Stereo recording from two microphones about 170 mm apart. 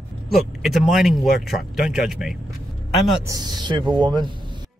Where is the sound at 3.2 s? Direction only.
20° right (ahead or behind).